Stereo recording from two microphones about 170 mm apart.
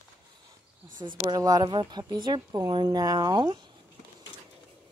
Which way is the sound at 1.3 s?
20° right (ahead or behind).